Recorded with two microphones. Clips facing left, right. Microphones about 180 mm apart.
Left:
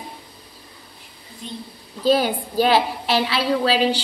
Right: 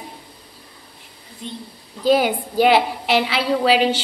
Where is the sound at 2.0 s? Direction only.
15° right (ahead or behind).